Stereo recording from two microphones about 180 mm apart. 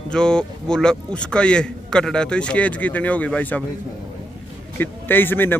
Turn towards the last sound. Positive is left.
turn(degrees=10)  # may be behind; listen again after turning